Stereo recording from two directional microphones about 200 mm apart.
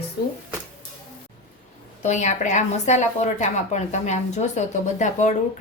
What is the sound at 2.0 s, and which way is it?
A woman's voice, 35° left (ahead or behind).